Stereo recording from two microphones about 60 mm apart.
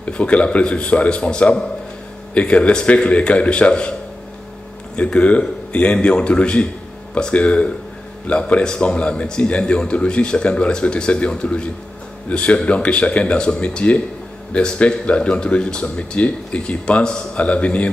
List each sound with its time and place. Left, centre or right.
0.0 s a man's voice: left
4.9 s a man's voice: left